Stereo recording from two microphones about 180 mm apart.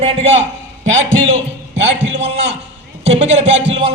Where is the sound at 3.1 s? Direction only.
35° right (ahead or behind).